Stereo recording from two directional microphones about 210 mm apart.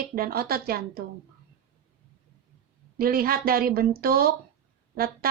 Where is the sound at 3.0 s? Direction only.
45° right (ahead or behind).